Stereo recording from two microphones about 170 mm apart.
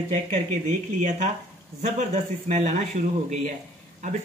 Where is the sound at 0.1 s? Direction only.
45° right (ahead or behind).